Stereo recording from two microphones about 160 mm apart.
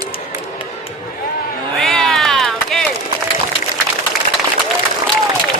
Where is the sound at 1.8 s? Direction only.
5° left (ahead or behind).